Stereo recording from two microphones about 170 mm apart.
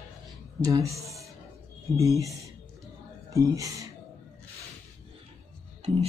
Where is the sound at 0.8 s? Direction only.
20° right (ahead or behind).